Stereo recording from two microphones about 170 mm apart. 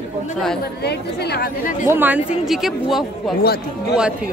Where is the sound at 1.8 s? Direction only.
10° right (ahead or behind).